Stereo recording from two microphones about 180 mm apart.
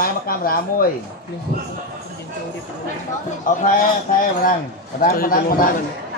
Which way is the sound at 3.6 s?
50° left (ahead or behind).